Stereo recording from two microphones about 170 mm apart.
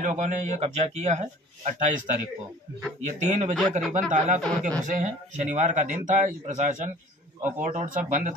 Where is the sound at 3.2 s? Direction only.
45° right (ahead or behind).